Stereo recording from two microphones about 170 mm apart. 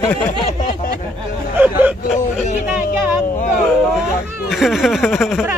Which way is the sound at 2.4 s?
50° left (ahead or behind).